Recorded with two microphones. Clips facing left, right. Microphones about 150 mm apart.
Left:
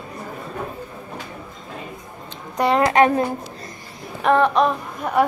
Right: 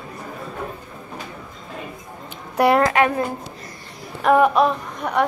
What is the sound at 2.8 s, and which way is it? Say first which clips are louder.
Speech: left 2 dB; 25° left (ahead or behind).